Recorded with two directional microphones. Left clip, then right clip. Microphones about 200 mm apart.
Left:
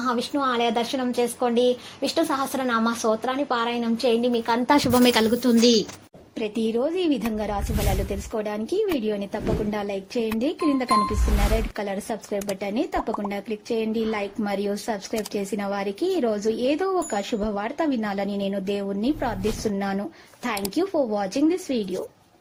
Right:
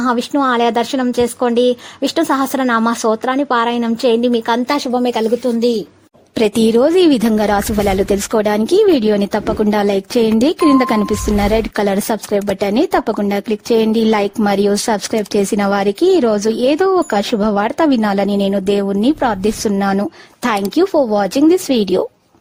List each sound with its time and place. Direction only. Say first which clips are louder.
0.0 s speech: right 9 dB; 45° right (ahead or behind)
5.5 s a woman's voice: right 3 dB; 25° right (ahead or behind)
6.4 s speech: right 13 dB; 60° right (ahead or behind)